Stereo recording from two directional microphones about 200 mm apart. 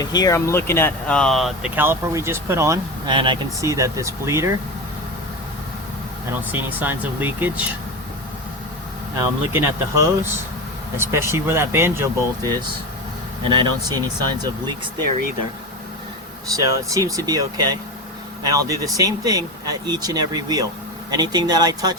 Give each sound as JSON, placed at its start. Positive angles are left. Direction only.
{"t": 0.0, "sound": "speech", "side_deg": 20}
{"t": 6.5, "sound": "speech", "side_deg": -10}
{"t": 9.5, "sound": "speech", "side_deg": -15}
{"t": 16.6, "sound": "speech", "side_deg": -15}